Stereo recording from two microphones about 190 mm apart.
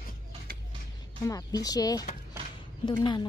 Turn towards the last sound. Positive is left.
turn(degrees=25)  # may be behind; listen again after turning